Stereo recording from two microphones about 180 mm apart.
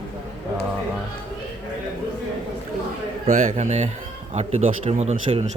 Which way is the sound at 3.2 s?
40° right (ahead or behind).